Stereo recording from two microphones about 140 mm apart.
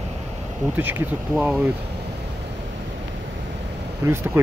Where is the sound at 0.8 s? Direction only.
15° right (ahead or behind).